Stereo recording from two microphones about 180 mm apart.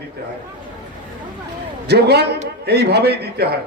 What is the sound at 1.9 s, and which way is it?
A man's voice, 65° right (ahead or behind).